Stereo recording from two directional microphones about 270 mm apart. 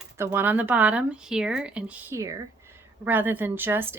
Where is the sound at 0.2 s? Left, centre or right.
Centre.